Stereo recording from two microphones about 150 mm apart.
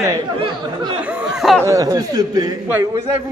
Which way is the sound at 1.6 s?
20° right (ahead or behind).